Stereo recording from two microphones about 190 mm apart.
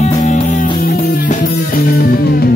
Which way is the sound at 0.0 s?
40° left (ahead or behind).